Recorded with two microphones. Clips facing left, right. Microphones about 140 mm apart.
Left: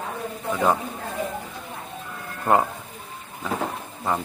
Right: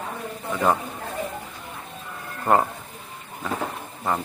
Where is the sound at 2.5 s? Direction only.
Centre (ahead or behind).